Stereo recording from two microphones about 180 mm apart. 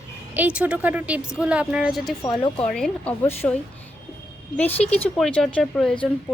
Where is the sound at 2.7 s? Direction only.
5° left (ahead or behind).